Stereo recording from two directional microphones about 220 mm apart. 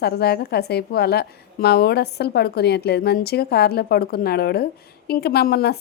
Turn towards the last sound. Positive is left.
turn(degrees=45)  # may be behind; listen again after turning